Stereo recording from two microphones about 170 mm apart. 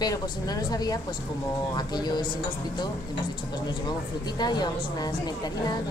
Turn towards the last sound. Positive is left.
turn(degrees=25)  # may be behind; listen again after turning